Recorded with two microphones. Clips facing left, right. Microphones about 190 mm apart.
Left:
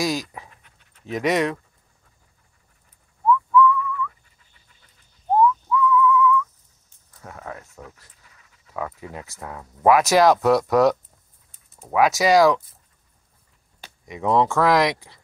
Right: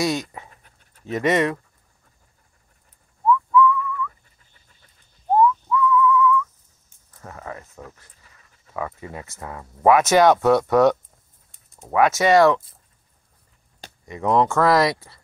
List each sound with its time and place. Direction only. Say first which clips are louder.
0.0 s speech: right 1 dB; centre (ahead or behind)
0.7 s pant: right 1 dB; 40° right (ahead or behind)
1.1 s speech: right 1 dB; centre (ahead or behind)
3.3 s whistling: even; centre (ahead or behind)
5.3 s whistling: right 1 dB; centre (ahead or behind)
7.2 s a sound: right 1 dB; centre (ahead or behind)
8.7 s speech: right 1 dB; centre (ahead or behind)
14.0 s speech: right 1 dB; centre (ahead or behind)